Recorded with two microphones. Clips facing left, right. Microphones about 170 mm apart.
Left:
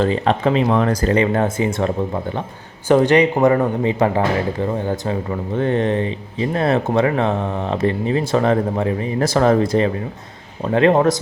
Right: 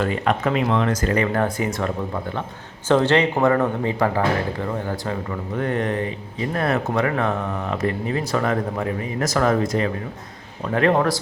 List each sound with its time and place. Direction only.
0.0 s speech: 30° left (ahead or behind)
1.1 s speech: 20° left (ahead or behind)
2.9 s speech: 15° left (ahead or behind)
5.5 s speech: 25° left (ahead or behind)